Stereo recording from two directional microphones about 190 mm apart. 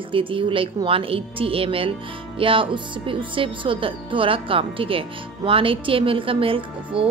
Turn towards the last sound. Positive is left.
turn(degrees=-30)  # may be behind; listen again after turning